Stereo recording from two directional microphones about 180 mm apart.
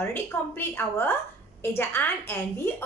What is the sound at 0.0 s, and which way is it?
Speech, 15° left (ahead or behind).